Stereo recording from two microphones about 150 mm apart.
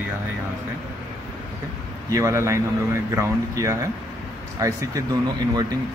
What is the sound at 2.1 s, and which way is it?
Speech, 20° right (ahead or behind).